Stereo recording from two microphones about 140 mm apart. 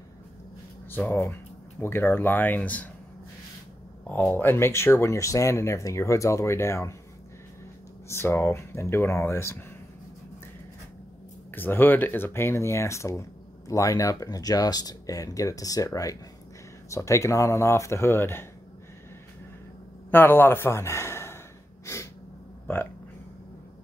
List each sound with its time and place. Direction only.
0.8 s speech: 15° left (ahead or behind)
4.1 s speech: 15° left (ahead or behind)
8.1 s speech: 15° left (ahead or behind)
11.5 s speech: 15° left (ahead or behind)
20.1 s speech: 15° left (ahead or behind)
21.8 s snort: 20° left (ahead or behind)